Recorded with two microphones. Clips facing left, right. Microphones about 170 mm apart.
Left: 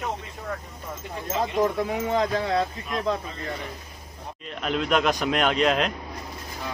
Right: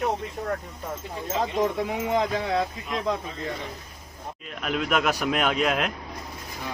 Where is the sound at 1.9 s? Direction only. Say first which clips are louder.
Left 1 dB; 15° right (ahead or behind).